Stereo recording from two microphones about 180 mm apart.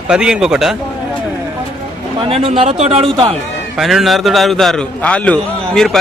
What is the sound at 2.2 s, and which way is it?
A man's voice, 30° right (ahead or behind).